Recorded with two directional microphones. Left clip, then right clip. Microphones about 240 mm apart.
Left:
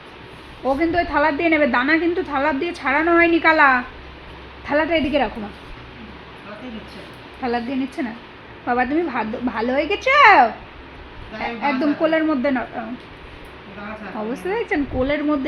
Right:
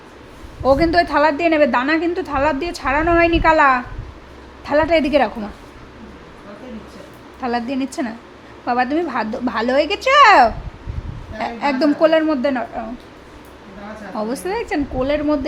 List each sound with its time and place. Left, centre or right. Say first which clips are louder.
0.8 s a woman's voice: even; centre
7.4 s a woman's voice: right 2 dB; centre
11.6 s a woman's voice: right 4 dB; centre
14.4 s a woman's voice: left 3 dB; centre